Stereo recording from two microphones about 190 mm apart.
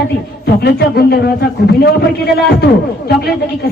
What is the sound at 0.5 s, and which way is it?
A man's voice, 60° left (ahead or behind).